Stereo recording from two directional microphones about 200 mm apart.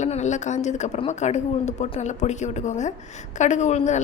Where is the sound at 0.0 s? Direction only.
35° left (ahead or behind).